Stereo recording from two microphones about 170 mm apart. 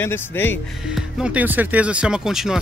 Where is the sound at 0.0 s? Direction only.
15° left (ahead or behind).